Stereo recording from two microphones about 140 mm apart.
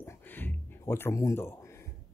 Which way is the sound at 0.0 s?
15° left (ahead or behind).